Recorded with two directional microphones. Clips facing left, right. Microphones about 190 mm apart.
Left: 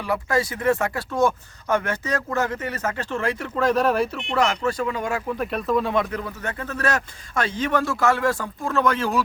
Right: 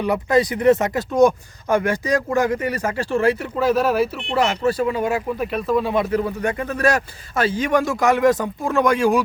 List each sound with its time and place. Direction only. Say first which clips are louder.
0.0 s speech: right 5 dB; 20° right (ahead or behind); by 4.3 s 5° right (ahead or behind)
4.3 s speech: right 2 dB; 30° right (ahead or behind)
5.4 s speech: even; centre (ahead or behind)